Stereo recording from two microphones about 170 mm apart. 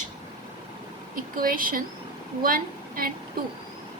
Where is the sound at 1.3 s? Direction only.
55° right (ahead or behind).